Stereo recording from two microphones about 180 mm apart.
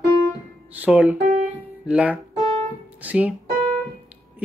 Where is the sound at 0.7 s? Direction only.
10° right (ahead or behind).